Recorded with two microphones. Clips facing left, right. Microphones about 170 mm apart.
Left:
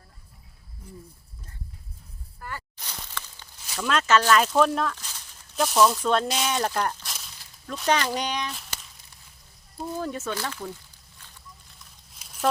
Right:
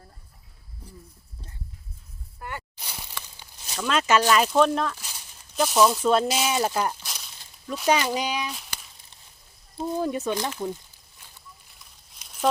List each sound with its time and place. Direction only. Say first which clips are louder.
0.8 s wild animals: left 3 dB; 30° right (ahead or behind)
2.4 s a sound: right 2 dB; 20° right (ahead or behind)
3.8 s speech: even; centre (ahead or behind)
4.0 s speech: even; 15° right (ahead or behind)
4.6 s speech: right 1 dB; centre (ahead or behind)
9.8 s speech: right 4 dB; 15° right (ahead or behind)
12.2 s a sound: right 1 dB; centre (ahead or behind)